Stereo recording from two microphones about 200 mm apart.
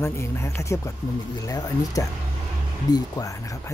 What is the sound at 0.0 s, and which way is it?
Speech, 15° left (ahead or behind).